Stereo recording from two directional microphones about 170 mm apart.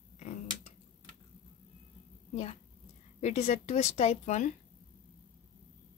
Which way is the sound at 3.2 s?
40° left (ahead or behind).